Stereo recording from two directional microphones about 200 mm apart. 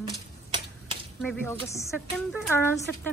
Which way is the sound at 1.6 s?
15° left (ahead or behind).